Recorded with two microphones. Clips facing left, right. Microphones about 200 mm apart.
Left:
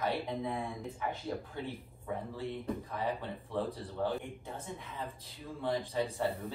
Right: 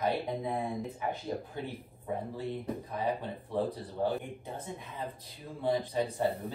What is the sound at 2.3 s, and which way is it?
Speech, 15° right (ahead or behind).